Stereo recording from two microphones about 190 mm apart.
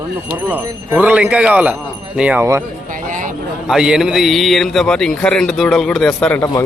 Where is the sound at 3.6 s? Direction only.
5° right (ahead or behind).